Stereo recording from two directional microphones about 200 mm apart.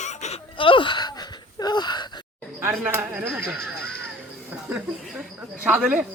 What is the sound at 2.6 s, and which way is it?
A man's voice, 10° right (ahead or behind).